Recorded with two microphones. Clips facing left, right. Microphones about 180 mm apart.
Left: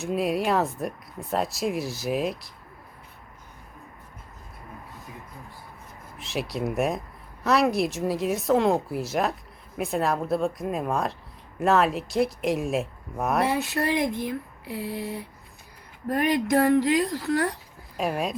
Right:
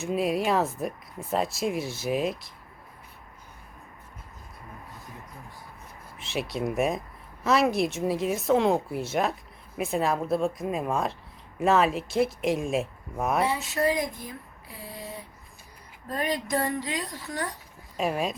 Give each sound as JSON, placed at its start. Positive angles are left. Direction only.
{"t": 0.0, "sound": "speech", "side_deg": 0}
{"t": 6.1, "sound": "speech", "side_deg": 0}
{"t": 13.4, "sound": "speech", "side_deg": 65}
{"t": 16.0, "sound": "a woman's voice", "side_deg": 60}
{"t": 17.9, "sound": "speech", "side_deg": 0}